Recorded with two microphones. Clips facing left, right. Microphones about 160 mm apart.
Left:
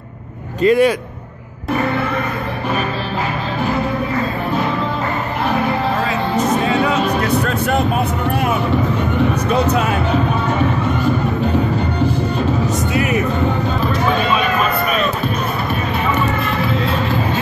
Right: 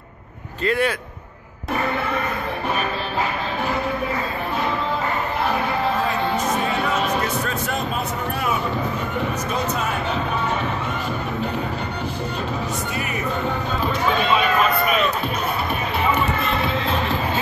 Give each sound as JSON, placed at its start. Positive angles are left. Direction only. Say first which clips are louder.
{"t": 0.6, "sound": "a man's voice", "louder": "left 9 dB", "side_deg": 15}
{"t": 7.4, "sound": "vehicle", "louder": "left 8 dB", "side_deg": 65}
{"t": 9.5, "sound": "music", "louder": "left 8 dB", "side_deg": 65}
{"t": 12.9, "sound": "music", "louder": "left 10 dB", "side_deg": 90}